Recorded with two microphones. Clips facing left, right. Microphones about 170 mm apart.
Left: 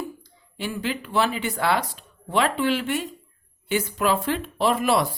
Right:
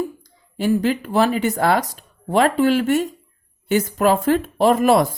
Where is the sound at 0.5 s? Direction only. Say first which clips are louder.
Right 10 dB; 45° right (ahead or behind).